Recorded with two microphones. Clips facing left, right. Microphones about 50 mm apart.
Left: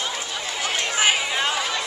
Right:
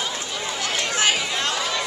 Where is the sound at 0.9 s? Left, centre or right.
Centre.